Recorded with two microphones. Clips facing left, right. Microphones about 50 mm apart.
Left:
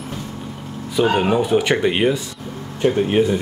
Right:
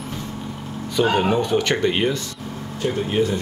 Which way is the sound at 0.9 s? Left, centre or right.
Centre.